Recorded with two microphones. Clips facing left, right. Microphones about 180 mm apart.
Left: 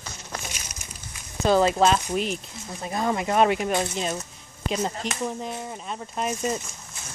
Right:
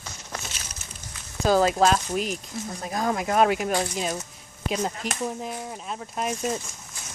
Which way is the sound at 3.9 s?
5° right (ahead or behind).